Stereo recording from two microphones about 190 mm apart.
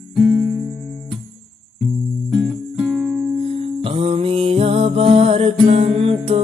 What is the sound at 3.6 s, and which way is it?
Music, 30° right (ahead or behind).